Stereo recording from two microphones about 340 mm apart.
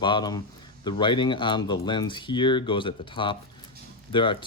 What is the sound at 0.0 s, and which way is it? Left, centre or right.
Speech, centre.